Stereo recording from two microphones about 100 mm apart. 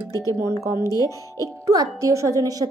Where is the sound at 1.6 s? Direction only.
30° right (ahead or behind).